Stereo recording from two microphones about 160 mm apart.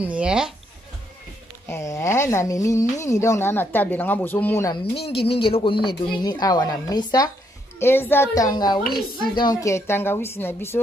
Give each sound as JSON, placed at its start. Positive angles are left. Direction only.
{"t": 0.0, "sound": "speech", "side_deg": -5}
{"t": 1.7, "sound": "speech", "side_deg": 20}
{"t": 4.9, "sound": "speech", "side_deg": 35}
{"t": 7.8, "sound": "speech", "side_deg": 15}
{"t": 8.8, "sound": "a woman's voice", "side_deg": 70}
{"t": 9.4, "sound": "speech", "side_deg": 20}